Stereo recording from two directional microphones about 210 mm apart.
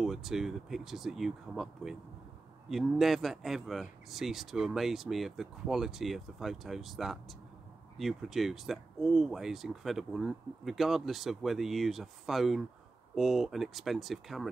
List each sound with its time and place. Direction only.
0.0 s speech: centre (ahead or behind)